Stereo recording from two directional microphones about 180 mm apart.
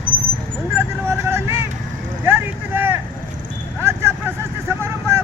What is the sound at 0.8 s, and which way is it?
Vehicle, 15° right (ahead or behind).